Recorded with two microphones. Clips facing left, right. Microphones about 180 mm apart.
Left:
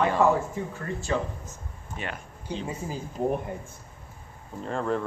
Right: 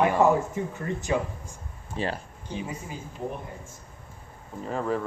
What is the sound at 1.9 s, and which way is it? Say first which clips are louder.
Speech: right 6 dB; 30° right (ahead or behind).